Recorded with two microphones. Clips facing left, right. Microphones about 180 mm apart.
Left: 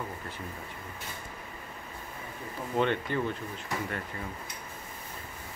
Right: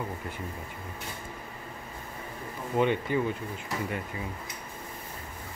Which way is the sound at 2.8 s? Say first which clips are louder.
Right 3 dB; 10° right (ahead or behind).